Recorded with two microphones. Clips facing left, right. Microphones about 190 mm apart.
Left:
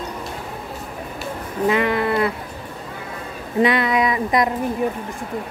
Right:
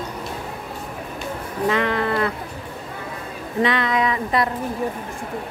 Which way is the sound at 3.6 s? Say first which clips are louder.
Left 3 dB; 10° left (ahead or behind).